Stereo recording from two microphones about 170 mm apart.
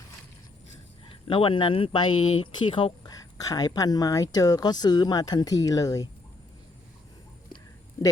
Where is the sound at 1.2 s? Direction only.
30° left (ahead or behind).